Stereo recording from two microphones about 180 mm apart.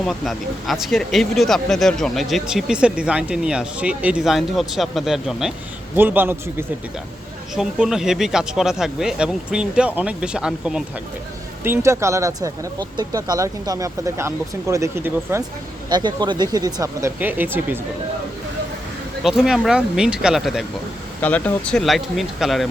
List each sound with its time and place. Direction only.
0.0 s speech: centre (ahead or behind)
19.2 s speech: 5° right (ahead or behind)
21.2 s speech: 10° left (ahead or behind)